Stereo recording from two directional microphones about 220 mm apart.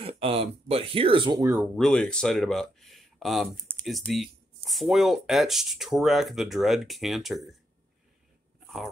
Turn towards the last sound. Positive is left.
turn(degrees=0)  # may be behind; listen again after turning